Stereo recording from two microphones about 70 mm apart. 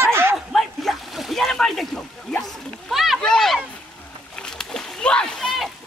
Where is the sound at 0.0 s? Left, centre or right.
Right.